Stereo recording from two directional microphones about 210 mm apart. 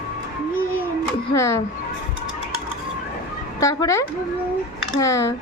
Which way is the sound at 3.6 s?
15° left (ahead or behind).